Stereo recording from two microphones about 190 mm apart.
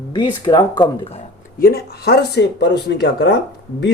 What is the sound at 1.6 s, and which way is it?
Speech, 55° left (ahead or behind).